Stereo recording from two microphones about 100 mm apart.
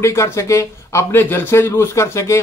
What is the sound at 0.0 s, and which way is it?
A man's voice, 30° left (ahead or behind).